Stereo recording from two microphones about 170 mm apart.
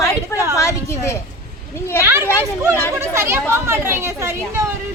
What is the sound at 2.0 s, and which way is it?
Speech, 15° right (ahead or behind).